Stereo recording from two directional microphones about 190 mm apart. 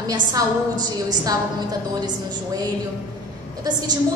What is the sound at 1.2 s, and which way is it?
Speech, 20° right (ahead or behind).